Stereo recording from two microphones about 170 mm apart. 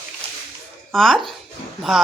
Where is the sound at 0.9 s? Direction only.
Centre (ahead or behind).